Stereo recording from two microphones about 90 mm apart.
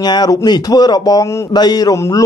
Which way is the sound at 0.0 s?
50° left (ahead or behind).